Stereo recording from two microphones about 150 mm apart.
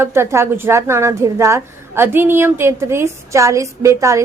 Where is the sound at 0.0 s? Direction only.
15° right (ahead or behind).